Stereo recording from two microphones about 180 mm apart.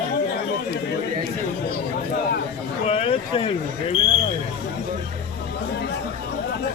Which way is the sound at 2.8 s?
35° left (ahead or behind).